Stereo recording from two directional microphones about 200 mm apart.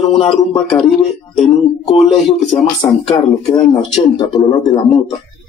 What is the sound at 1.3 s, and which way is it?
Speech, centre (ahead or behind).